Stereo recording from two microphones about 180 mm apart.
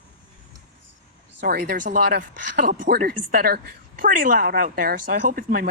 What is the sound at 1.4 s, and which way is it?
Speech, 65° right (ahead or behind).